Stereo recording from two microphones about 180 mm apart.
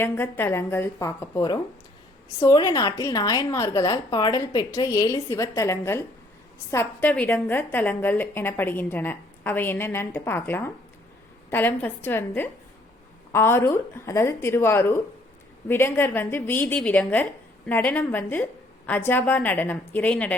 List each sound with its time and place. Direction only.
0.0 s a woman's voice: 10° left (ahead or behind)